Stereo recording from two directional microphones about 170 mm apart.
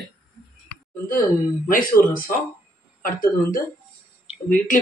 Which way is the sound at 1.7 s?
55° left (ahead or behind).